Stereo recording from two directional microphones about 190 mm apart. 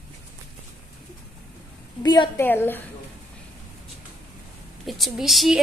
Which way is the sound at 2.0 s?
25° left (ahead or behind).